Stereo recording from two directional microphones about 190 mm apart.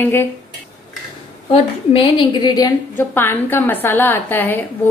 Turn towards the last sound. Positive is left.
turn(degrees=10)  # may be behind; listen again after turning